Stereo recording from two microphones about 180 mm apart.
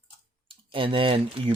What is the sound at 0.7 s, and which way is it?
Speech, 30° right (ahead or behind).